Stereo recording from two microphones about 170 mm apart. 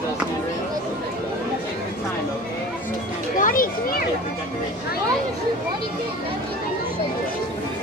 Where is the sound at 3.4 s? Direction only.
55° left (ahead or behind).